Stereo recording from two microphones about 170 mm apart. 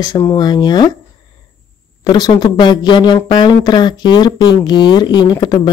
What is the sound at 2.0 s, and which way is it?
Speech, 25° left (ahead or behind).